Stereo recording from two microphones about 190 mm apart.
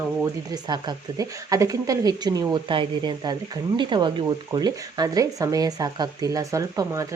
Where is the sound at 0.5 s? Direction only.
20° right (ahead or behind).